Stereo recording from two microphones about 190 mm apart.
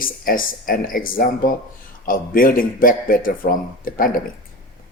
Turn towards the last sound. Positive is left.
turn(degrees=50)  # may be behind; listen again after turning